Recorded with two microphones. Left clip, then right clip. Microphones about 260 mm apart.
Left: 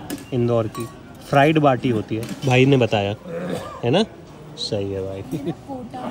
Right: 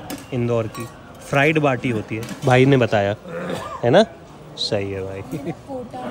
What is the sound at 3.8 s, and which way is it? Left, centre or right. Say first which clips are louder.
Speech: right 6 dB; centre.